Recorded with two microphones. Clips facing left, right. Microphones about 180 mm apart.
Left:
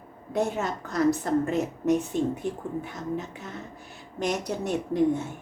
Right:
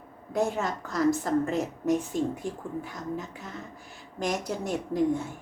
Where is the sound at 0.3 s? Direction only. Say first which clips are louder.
Even; 20° left (ahead or behind).